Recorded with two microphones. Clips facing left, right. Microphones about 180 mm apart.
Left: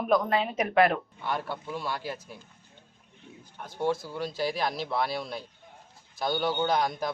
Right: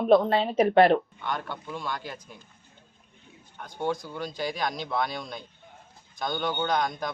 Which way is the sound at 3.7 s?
5° left (ahead or behind).